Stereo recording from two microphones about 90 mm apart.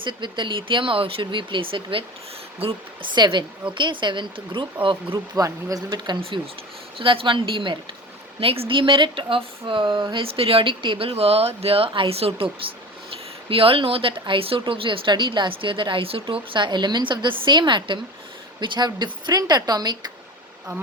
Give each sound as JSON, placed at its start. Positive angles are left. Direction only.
{"t": 0.0, "sound": "speech", "side_deg": -60}
{"t": 2.6, "sound": "speech", "side_deg": -90}
{"t": 3.2, "sound": "speech", "side_deg": -55}
{"t": 5.4, "sound": "speech", "side_deg": -40}
{"t": 7.0, "sound": "speech", "side_deg": -70}
{"t": 8.4, "sound": "speech", "side_deg": -90}
{"t": 13.5, "sound": "speech", "side_deg": -90}
{"t": 16.2, "sound": "a woman's voice", "side_deg": -65}